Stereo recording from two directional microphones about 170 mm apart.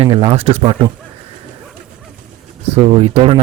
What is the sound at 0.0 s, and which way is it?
Speech, 30° right (ahead or behind).